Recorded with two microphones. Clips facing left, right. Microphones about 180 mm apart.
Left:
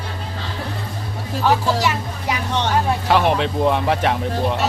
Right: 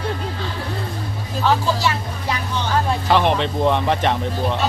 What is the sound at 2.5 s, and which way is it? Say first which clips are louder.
Speech: left 3 dB; 75° left (ahead or behind).